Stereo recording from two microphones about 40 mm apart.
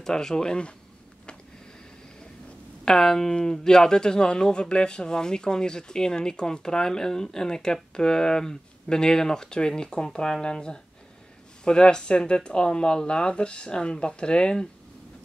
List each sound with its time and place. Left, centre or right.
0.0 s speech: centre
2.8 s speech: centre